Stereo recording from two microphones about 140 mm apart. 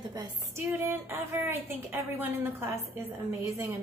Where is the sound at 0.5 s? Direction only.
15° right (ahead or behind).